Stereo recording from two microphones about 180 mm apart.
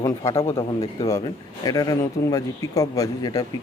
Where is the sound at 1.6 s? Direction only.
20° left (ahead or behind).